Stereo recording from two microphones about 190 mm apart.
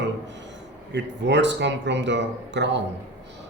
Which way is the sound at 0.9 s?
65° right (ahead or behind).